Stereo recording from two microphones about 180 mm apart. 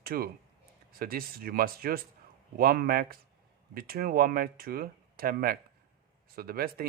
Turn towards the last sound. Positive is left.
turn(degrees=-55)  # may be behind; listen again after turning